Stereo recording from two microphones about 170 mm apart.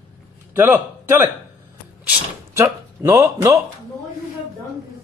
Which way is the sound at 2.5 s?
15° right (ahead or behind).